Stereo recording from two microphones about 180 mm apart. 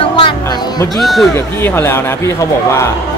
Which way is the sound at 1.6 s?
10° left (ahead or behind).